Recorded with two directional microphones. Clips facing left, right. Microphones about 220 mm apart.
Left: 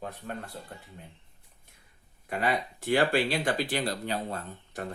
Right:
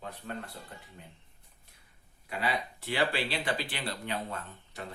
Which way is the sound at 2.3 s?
50° left (ahead or behind).